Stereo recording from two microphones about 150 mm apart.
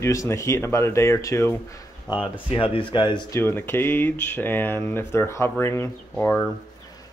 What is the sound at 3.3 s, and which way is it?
Speech, 15° left (ahead or behind).